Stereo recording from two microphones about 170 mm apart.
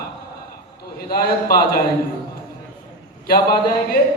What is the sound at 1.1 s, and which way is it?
Speech, 60° left (ahead or behind).